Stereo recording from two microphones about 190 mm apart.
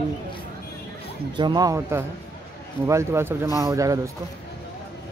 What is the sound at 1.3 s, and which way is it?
Speech, 20° right (ahead or behind).